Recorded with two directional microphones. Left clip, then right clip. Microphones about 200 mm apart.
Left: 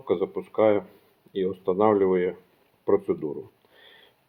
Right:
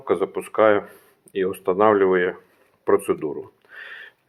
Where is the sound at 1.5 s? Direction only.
25° right (ahead or behind).